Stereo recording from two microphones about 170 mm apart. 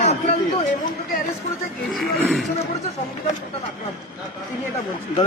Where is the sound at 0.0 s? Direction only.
45° left (ahead or behind).